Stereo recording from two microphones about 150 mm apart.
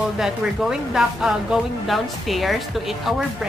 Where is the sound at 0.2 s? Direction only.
5° right (ahead or behind).